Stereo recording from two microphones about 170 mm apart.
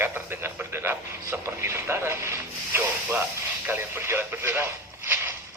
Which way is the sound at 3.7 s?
15° right (ahead or behind).